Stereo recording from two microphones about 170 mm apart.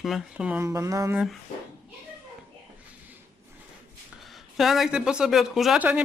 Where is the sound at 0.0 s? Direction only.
5° right (ahead or behind).